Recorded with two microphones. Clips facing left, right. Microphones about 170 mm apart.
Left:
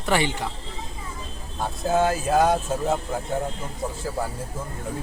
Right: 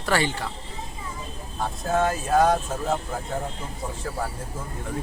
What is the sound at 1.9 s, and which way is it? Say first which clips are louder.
Speech: left 1 dB; 5° left (ahead or behind).